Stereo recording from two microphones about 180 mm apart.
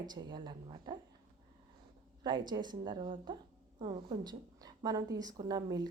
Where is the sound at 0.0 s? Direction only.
25° right (ahead or behind).